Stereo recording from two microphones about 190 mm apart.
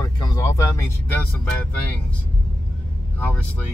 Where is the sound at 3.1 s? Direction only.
10° left (ahead or behind).